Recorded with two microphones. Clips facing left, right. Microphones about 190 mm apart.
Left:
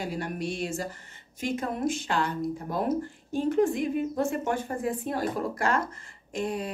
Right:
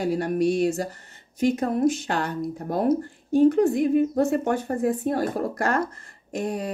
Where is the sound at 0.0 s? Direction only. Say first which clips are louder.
Right 9 dB; 40° right (ahead or behind).